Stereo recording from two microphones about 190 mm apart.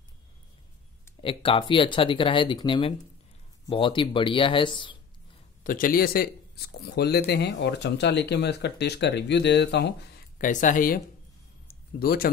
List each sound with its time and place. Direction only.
1.2 s speech: 25° left (ahead or behind)
5.6 s speech: 45° left (ahead or behind); by 9.9 s 65° left (ahead or behind)
10.4 s speech: 45° left (ahead or behind)
12.0 s speech: 50° left (ahead or behind)